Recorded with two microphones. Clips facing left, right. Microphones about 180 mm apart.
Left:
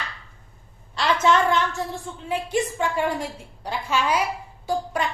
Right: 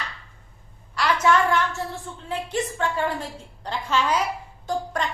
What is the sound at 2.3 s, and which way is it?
A woman's voice, 10° left (ahead or behind).